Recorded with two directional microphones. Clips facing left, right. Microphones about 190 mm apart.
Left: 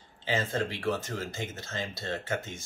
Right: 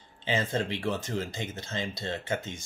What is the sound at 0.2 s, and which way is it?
Speech, 20° right (ahead or behind).